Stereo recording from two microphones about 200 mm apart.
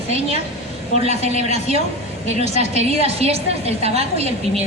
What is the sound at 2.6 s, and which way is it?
A woman's voice, 30° right (ahead or behind).